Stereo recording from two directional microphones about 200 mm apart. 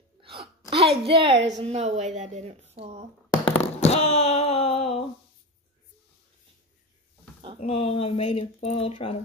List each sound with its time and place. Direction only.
0.7 s a woman's voice: 30° right (ahead or behind)
1.3 s a woman's voice: 60° right (ahead or behind)
1.6 s speech: 30° right (ahead or behind)
3.5 s a sound: 30° left (ahead or behind)
7.6 s speech: 30° left (ahead or behind)